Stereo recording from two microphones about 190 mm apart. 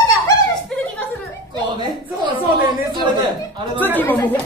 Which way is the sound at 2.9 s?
25° right (ahead or behind).